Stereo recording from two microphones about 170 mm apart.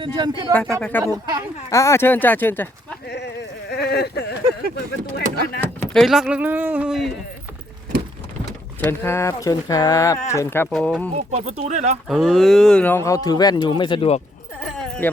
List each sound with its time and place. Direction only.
0.0 s speech: 25° right (ahead or behind)
0.8 s speech: 10° left (ahead or behind)
1.0 s speech: 20° right (ahead or behind)
1.7 s speech: 15° left (ahead or behind)
3.1 s a sound: 85° left
5.5 s speech: 5° left (ahead or behind)
8.8 s speech: 15° left (ahead or behind)
10.7 s speech: 5° left (ahead or behind)
11.1 s speech: 40° right (ahead or behind)
12.0 s speech: centre (ahead or behind); by 14.2 s 30° left (ahead or behind)
14.8 s a sound: 5° left (ahead or behind)